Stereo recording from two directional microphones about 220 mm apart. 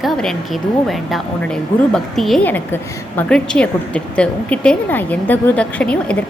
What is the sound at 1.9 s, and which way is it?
A woman's voice, centre (ahead or behind).